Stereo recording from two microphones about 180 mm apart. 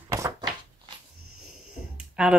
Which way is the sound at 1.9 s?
5° right (ahead or behind).